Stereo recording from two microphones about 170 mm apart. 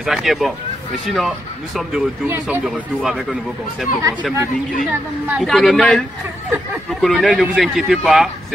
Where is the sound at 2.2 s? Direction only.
10° right (ahead or behind).